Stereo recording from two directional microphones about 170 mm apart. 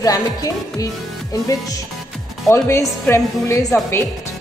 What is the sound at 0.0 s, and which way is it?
Music, 20° left (ahead or behind).